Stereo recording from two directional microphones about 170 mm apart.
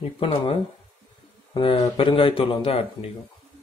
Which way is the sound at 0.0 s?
35° left (ahead or behind).